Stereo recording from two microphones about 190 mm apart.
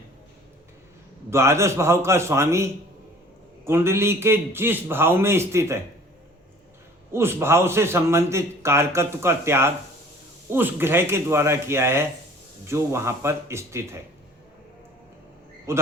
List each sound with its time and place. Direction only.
1.3 s a man's voice: 15° right (ahead or behind)
7.1 s a man's voice: 15° right (ahead or behind)
15.7 s a man's voice: 15° right (ahead or behind)